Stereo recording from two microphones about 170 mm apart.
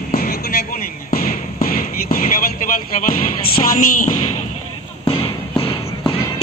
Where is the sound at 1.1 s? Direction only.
60° left (ahead or behind).